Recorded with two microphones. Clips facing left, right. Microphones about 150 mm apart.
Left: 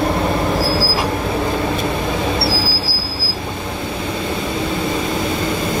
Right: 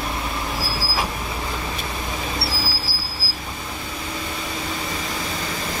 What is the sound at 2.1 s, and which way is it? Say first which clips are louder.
Vehicle: left 9 dB; 65° left (ahead or behind).